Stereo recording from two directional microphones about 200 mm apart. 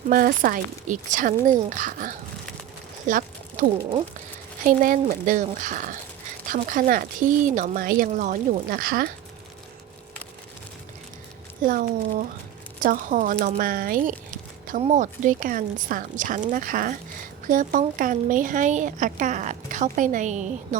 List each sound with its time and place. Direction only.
0.1 s a woman's voice: 45° right (ahead or behind)
11.6 s a woman's voice: 45° right (ahead or behind)